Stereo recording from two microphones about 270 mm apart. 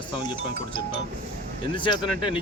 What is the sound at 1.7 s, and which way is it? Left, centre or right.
Speech, centre.